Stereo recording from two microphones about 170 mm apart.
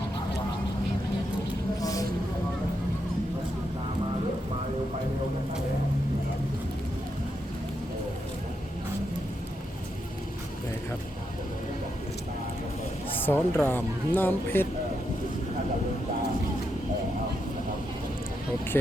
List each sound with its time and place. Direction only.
1.8 s vehicle: 20° left (ahead or behind)
13.2 s speech: 10° left (ahead or behind)